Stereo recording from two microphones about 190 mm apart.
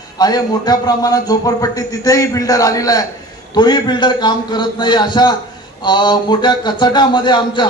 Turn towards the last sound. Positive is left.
turn(degrees=25)  # may be behind; listen again after turning